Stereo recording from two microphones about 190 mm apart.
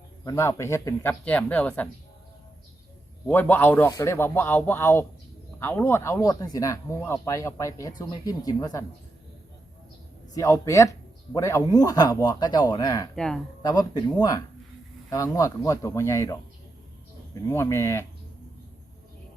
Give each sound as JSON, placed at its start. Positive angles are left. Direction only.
{"t": 0.3, "sound": "speech", "side_deg": 15}
{"t": 3.2, "sound": "speech", "side_deg": 10}
{"t": 10.3, "sound": "a man's voice", "side_deg": 15}
{"t": 13.1, "sound": "speech", "side_deg": 5}
{"t": 13.6, "sound": "a man's voice", "side_deg": 20}